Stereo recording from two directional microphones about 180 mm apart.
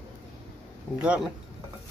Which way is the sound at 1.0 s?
5° right (ahead or behind).